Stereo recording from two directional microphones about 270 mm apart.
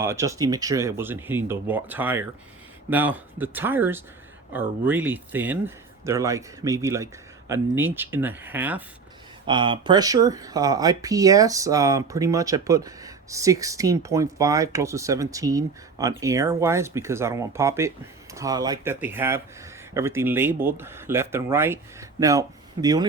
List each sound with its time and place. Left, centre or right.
0.0 s speech: centre
9.5 s speech: centre